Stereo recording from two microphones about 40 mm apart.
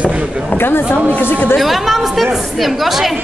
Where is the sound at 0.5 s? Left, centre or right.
Left.